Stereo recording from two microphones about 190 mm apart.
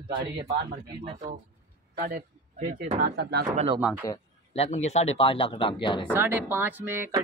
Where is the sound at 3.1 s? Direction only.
60° right (ahead or behind).